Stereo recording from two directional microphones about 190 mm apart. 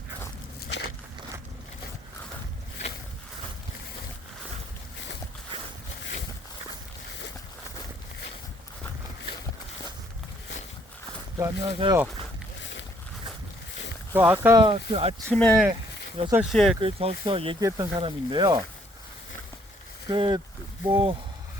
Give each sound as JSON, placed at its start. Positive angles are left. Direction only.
{"t": 0.7, "sound": "a sound", "side_deg": 65}
{"t": 11.3, "sound": "speech", "side_deg": -20}
{"t": 14.1, "sound": "speech", "side_deg": -10}
{"t": 14.3, "sound": "speech", "side_deg": -20}
{"t": 14.7, "sound": "speech", "side_deg": -30}
{"t": 15.3, "sound": "speech", "side_deg": 5}
{"t": 16.8, "sound": "speech", "side_deg": -30}
{"t": 17.6, "sound": "speech", "side_deg": -20}
{"t": 20.1, "sound": "speech", "side_deg": -25}